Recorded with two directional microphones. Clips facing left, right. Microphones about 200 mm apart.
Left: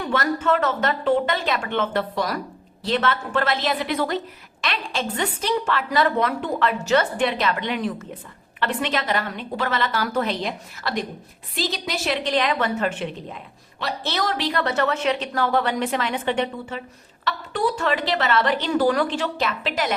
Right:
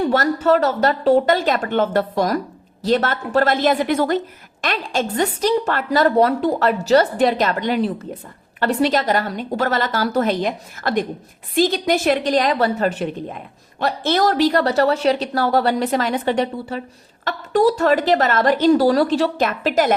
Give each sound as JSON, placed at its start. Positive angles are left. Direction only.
{"t": 0.0, "sound": "a woman's voice", "side_deg": -40}